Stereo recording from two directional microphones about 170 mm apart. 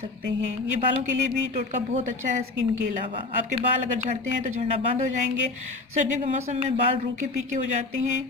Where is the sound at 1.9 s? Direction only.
45° right (ahead or behind).